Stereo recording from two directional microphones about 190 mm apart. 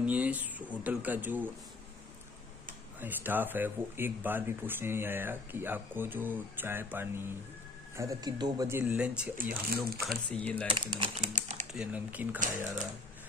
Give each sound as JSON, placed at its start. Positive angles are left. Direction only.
{"t": 0.0, "sound": "speech", "side_deg": -10}
{"t": 3.0, "sound": "speech", "side_deg": -10}
{"t": 9.4, "sound": "speech", "side_deg": -50}
{"t": 10.0, "sound": "speech", "side_deg": 5}
{"t": 10.7, "sound": "speech", "side_deg": -25}
{"t": 11.7, "sound": "speech", "side_deg": -5}